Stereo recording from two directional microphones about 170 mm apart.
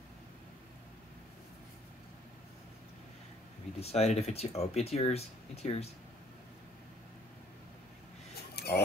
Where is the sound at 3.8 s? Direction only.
35° left (ahead or behind).